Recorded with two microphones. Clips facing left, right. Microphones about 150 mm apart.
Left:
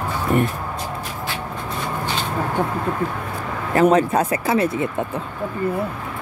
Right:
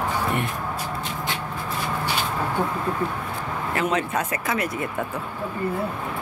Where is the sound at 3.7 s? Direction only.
40° left (ahead or behind); by 5.2 s 25° left (ahead or behind).